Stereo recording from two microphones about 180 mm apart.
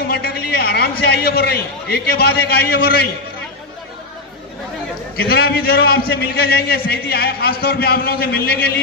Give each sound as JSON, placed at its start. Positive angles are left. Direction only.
{"t": 0.0, "sound": "a woman's voice", "side_deg": 60}
{"t": 5.1, "sound": "a man's voice", "side_deg": 60}